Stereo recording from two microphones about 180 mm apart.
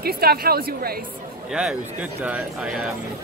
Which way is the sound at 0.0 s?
60° right (ahead or behind).